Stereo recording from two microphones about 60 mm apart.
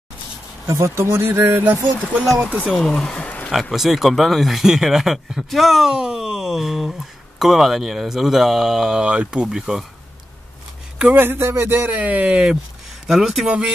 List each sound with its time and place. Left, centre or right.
0.7 s a man's voice: right
2.4 s speech: centre
2.8 s speech: centre
3.2 s a sound: left
3.7 s speech: centre
9.5 s speech: centre
11.1 s a man's voice: right
13.0 s speech: centre
13.5 s speech: centre